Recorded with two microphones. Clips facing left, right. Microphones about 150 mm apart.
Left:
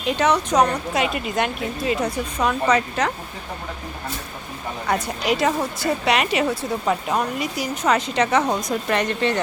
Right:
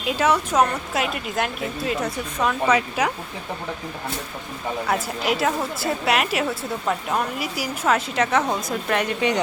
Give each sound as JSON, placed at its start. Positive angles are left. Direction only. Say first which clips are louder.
{"t": 0.0, "sound": "a woman's voice", "louder": "left 1 dB", "side_deg": -5}
{"t": 4.9, "sound": "a woman's voice", "louder": "left 3 dB", "side_deg": -5}